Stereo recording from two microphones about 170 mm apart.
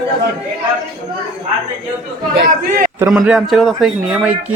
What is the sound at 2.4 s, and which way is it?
Speech, 60° right (ahead or behind).